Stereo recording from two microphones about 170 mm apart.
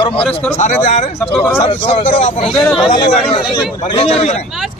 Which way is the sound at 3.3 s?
30° left (ahead or behind).